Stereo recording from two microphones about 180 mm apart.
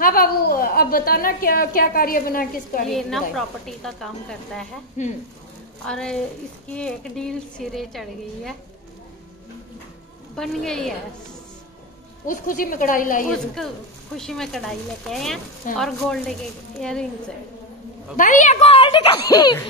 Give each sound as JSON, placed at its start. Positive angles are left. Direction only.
{"t": 0.0, "sound": "a woman's voice", "side_deg": 55}
{"t": 2.9, "sound": "a woman's voice", "side_deg": 0}
{"t": 5.0, "sound": "a woman's voice", "side_deg": 40}
{"t": 5.9, "sound": "a woman's voice", "side_deg": 5}
{"t": 10.3, "sound": "a woman's voice", "side_deg": 0}
{"t": 12.3, "sound": "speech", "side_deg": 50}
{"t": 14.1, "sound": "a woman's voice", "side_deg": 5}
{"t": 18.1, "sound": "a woman's voice", "side_deg": 45}